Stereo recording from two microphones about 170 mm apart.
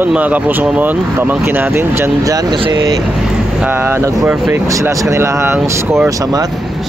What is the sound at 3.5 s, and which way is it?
Speech, 10° right (ahead or behind).